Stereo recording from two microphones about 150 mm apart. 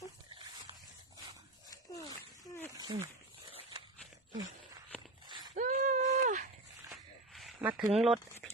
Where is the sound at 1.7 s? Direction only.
25° left (ahead or behind).